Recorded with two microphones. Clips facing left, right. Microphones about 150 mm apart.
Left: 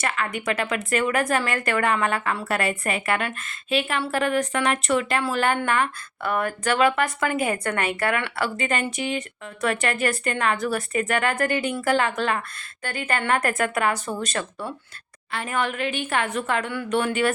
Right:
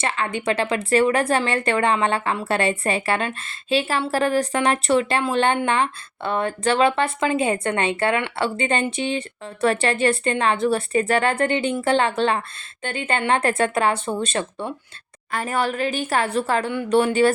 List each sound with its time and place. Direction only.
0.0 s a woman's voice: 25° right (ahead or behind)
15.3 s a woman's voice: 40° right (ahead or behind)